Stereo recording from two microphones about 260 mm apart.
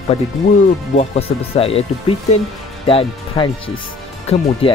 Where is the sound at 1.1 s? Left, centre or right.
Left.